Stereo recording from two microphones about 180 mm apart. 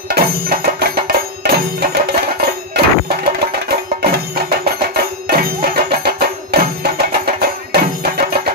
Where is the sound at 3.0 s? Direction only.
60° right (ahead or behind).